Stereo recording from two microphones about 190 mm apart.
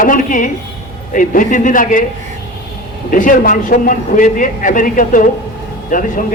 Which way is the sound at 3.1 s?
45° left (ahead or behind).